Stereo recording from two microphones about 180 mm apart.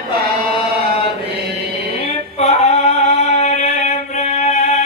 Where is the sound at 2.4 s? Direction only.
35° left (ahead or behind).